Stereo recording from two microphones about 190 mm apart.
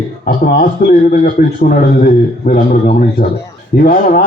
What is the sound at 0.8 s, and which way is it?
A man's voice, 60° left (ahead or behind).